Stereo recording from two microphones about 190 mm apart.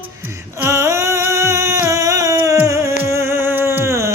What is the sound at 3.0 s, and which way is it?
Music, 15° right (ahead or behind).